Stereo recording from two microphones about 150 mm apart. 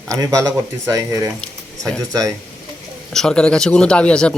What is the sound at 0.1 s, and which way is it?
Speech, 20° right (ahead or behind).